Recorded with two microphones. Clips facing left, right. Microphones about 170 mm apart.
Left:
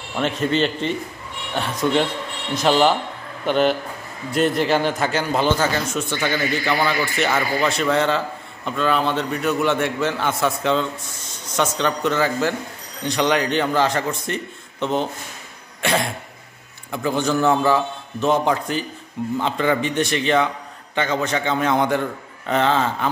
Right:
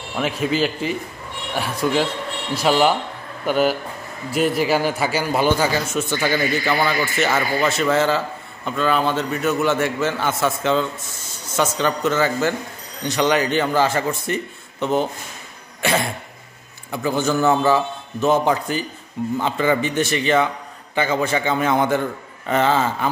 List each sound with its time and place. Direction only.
0.1 s a man's voice: 5° right (ahead or behind)
15.8 s cough: centre (ahead or behind)
16.9 s a man's voice: centre (ahead or behind)